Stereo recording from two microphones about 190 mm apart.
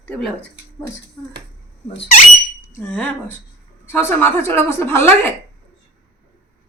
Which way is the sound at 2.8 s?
5° left (ahead or behind).